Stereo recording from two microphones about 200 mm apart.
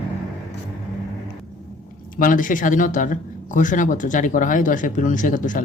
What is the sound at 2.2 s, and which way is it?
Speech, 40° left (ahead or behind).